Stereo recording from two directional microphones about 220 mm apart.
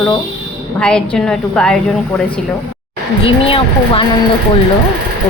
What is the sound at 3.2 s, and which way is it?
Speech, 25° left (ahead or behind).